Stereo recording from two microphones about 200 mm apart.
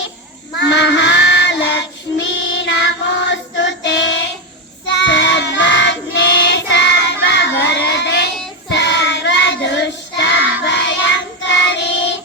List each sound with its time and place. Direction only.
0.6 s child singing: 60° left (ahead or behind)
10.6 s music: 60° left (ahead or behind)